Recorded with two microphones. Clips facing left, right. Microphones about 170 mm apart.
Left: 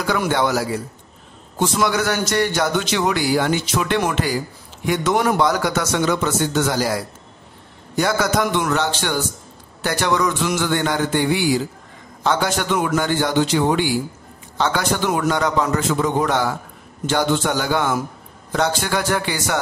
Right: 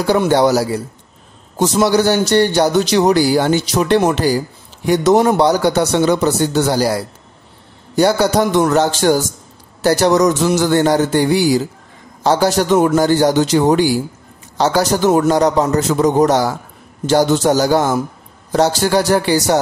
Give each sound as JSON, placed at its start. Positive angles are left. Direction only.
{"t": 0.0, "sound": "a man's voice", "side_deg": -30}